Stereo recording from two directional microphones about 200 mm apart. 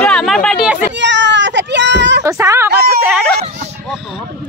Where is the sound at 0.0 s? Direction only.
5° left (ahead or behind).